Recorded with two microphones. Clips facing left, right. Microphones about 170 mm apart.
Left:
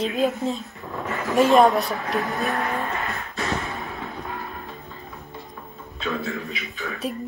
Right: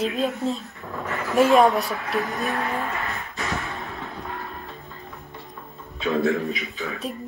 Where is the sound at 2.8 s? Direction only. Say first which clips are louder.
Left 1 dB; 20° left (ahead or behind).